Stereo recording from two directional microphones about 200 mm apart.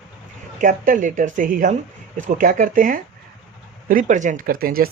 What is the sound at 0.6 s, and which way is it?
Speech, 45° right (ahead or behind).